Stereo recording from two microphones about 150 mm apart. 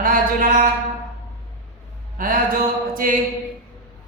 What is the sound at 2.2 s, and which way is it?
A man's voice, 65° right (ahead or behind).